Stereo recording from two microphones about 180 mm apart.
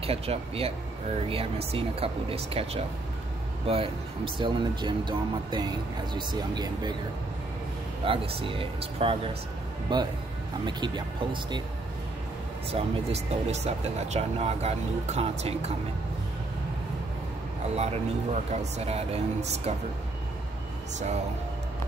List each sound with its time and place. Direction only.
0.0 s speech: 35° right (ahead or behind)
8.0 s speech: 30° right (ahead or behind)
12.7 s speech: 35° right (ahead or behind)
17.7 s speech: 35° right (ahead or behind)